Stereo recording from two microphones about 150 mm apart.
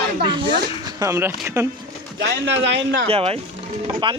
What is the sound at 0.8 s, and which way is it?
Speech, 20° right (ahead or behind).